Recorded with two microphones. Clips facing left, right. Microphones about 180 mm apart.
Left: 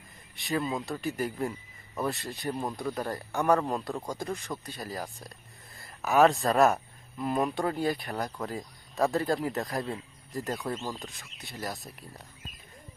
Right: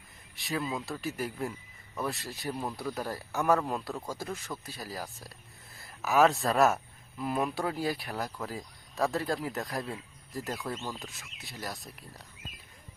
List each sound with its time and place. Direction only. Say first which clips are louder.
0.3 s speech: left 3 dB; centre (ahead or behind)
3.9 s speech: left 3 dB; 15° left (ahead or behind)
4.2 s speech: left 3 dB; 5° right (ahead or behind)